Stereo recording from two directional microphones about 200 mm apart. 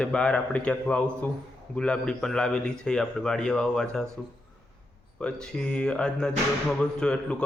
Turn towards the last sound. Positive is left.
turn(degrees=5)  # may be behind; listen again after turning